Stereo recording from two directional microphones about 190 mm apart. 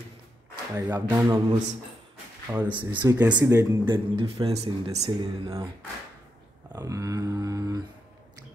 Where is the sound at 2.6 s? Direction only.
25° right (ahead or behind).